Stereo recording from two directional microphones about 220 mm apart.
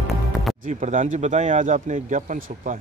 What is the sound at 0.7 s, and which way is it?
A man's voice, 35° right (ahead or behind).